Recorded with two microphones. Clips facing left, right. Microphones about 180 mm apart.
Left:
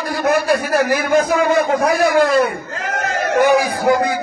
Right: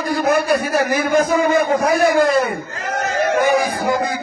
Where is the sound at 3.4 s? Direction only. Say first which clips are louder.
Left 3 dB; 65° left (ahead or behind).